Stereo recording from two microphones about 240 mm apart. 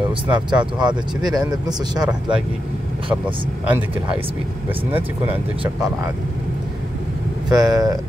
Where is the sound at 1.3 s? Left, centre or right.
Centre.